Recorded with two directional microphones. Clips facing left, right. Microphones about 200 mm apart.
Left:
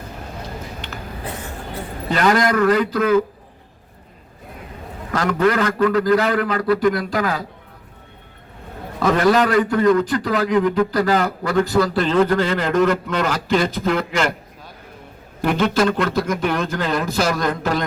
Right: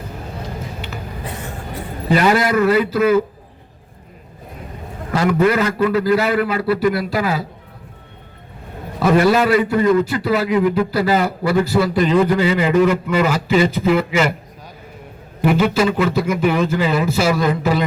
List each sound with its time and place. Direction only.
2.0 s a man's voice: 10° right (ahead or behind)
5.1 s a man's voice: 10° right (ahead or behind)
9.0 s a man's voice: 10° right (ahead or behind)
15.4 s a man's voice: 5° right (ahead or behind)